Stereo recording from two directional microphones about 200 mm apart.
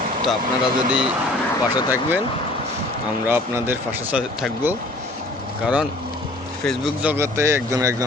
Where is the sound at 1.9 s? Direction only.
10° right (ahead or behind).